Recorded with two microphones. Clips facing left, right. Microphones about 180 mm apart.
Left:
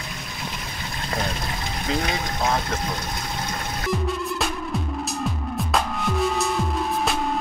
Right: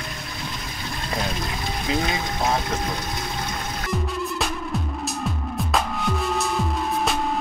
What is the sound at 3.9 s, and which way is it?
Music, centre (ahead or behind).